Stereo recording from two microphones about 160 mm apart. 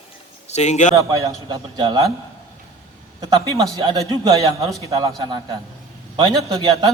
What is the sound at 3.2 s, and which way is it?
A man's voice, 25° right (ahead or behind).